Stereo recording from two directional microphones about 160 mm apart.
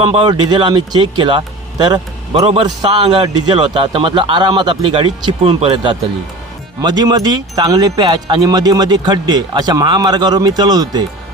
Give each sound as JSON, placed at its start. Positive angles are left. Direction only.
{"t": 0.0, "sound": "speech", "side_deg": -30}
{"t": 2.6, "sound": "a man's voice", "side_deg": -30}